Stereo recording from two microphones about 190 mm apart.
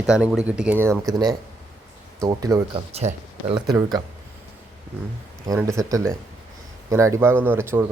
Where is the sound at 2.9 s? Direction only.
35° right (ahead or behind).